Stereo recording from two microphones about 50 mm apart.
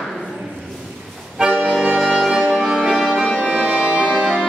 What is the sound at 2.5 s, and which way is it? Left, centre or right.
Music, centre.